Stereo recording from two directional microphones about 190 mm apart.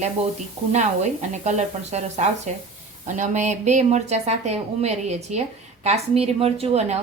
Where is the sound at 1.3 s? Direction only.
40° right (ahead or behind).